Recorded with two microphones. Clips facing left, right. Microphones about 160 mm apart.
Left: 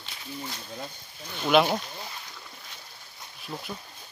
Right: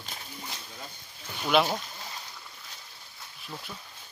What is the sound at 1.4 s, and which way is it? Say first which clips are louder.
Speech: left 3 dB; centre (ahead or behind).